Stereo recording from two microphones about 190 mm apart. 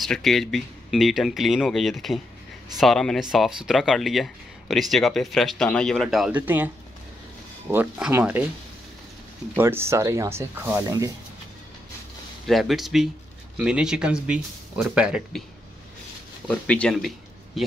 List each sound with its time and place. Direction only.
0.0 s speech: centre (ahead or behind)
7.7 s speech: 10° right (ahead or behind)
9.6 s speech: 10° right (ahead or behind)
12.4 s speech: centre (ahead or behind)
16.4 s speech: 5° left (ahead or behind)